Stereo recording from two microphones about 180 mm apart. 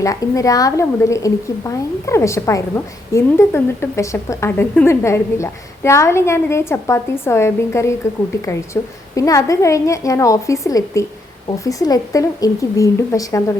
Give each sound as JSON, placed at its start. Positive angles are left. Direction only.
{"t": 0.0, "sound": "a woman's voice", "side_deg": 20}